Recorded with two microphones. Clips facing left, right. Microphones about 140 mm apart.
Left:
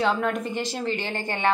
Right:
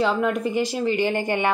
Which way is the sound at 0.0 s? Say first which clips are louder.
Right 3 dB; 5° right (ahead or behind).